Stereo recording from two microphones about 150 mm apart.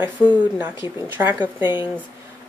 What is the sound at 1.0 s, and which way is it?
Speech, 10° right (ahead or behind).